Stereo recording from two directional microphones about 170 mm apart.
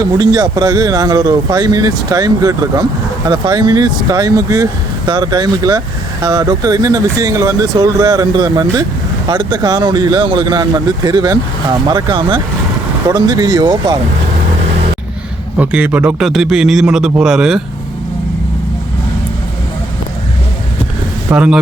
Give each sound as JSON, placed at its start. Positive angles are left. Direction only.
{"t": 0.0, "sound": "speech", "side_deg": -20}
{"t": 15.5, "sound": "a man's voice", "side_deg": -5}
{"t": 21.2, "sound": "speech", "side_deg": -5}